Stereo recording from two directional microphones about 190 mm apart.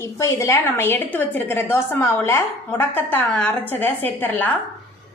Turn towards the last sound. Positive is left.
turn(degrees=10)  # may be behind; listen again after turning